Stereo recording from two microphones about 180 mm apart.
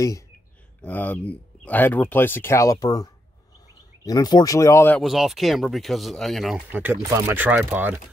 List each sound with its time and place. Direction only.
0.8 s speech: 10° left (ahead or behind)
5.0 s speech: centre (ahead or behind)
6.7 s speech: 10° right (ahead or behind)